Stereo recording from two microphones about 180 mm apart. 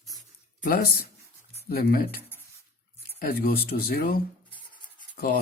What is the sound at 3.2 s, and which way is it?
Speech, 55° left (ahead or behind).